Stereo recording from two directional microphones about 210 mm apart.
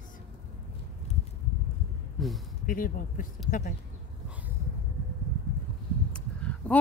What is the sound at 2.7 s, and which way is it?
Speech, 40° left (ahead or behind).